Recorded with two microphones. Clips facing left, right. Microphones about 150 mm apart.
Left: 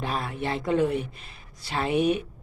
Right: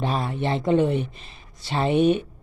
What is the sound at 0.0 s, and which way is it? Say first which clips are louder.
Speech: right 4 dB; 30° right (ahead or behind).